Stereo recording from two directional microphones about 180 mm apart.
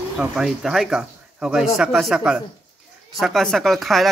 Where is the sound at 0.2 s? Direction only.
5° right (ahead or behind).